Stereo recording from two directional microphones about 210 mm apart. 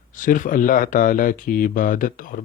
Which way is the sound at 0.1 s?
40° left (ahead or behind).